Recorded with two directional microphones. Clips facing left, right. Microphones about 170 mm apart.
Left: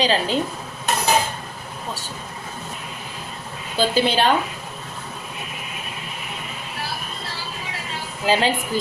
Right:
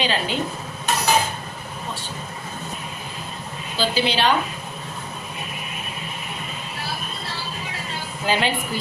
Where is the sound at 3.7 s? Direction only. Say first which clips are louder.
Left 3 dB; 50° left (ahead or behind).